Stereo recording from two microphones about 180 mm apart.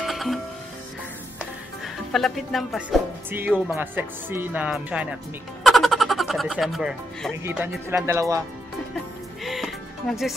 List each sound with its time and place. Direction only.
0.0 s music: centre (ahead or behind)
2.1 s speech: centre (ahead or behind)
3.3 s speech: 10° right (ahead or behind)
5.6 s music: centre (ahead or behind)
7.4 s speech: 10° right (ahead or behind)
9.4 s music: centre (ahead or behind)